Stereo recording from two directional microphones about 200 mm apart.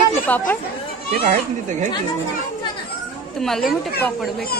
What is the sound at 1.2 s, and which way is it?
Speech, 35° right (ahead or behind).